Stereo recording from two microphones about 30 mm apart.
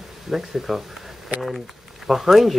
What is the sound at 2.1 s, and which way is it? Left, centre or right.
Speech, centre.